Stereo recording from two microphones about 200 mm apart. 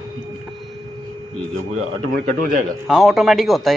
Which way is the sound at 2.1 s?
45° right (ahead or behind).